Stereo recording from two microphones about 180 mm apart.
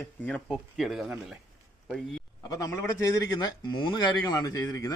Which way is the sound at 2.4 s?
20° left (ahead or behind).